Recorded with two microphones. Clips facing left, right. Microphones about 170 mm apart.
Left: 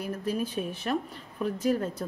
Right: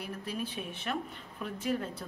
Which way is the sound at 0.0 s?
45° left (ahead or behind).